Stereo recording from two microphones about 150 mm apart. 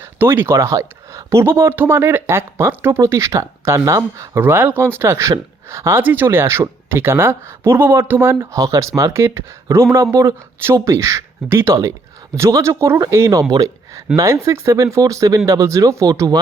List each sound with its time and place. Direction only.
0.0 s speech: 15° right (ahead or behind)